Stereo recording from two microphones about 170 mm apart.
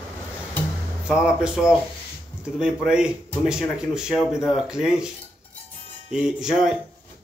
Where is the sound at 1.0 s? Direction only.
5° right (ahead or behind).